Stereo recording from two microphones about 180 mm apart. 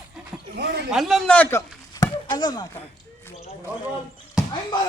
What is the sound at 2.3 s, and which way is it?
Speech, 25° left (ahead or behind).